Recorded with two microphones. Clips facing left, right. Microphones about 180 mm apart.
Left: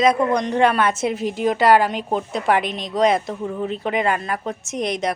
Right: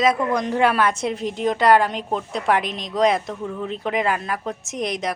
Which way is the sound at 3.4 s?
15° left (ahead or behind).